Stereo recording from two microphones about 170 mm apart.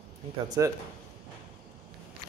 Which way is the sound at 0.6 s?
20° right (ahead or behind).